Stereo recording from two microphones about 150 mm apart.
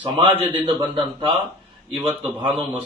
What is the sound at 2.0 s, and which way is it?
Speech, 40° right (ahead or behind).